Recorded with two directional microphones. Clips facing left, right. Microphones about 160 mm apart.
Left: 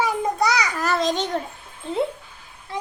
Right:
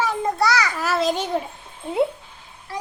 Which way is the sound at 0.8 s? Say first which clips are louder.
Even; 5° right (ahead or behind).